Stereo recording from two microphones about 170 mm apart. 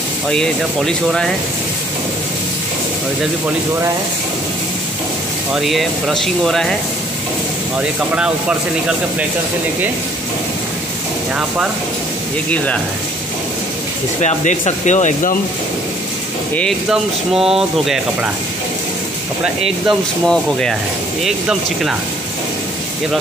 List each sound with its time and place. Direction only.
0.3 s speech: centre (ahead or behind)
5.5 s speech: centre (ahead or behind)
11.3 s speech: 5° right (ahead or behind)
14.2 s speech: 45° left (ahead or behind)
16.9 s speech: 5° right (ahead or behind)
19.9 s speech: 5° left (ahead or behind)